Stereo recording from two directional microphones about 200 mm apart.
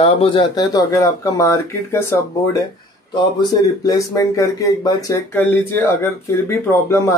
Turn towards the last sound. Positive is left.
turn(degrees=15)  # may be behind; listen again after turning